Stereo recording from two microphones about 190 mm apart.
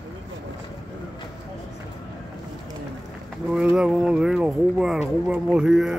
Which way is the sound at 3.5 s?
5° right (ahead or behind).